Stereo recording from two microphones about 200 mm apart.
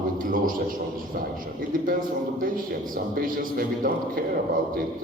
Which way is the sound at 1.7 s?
45° right (ahead or behind).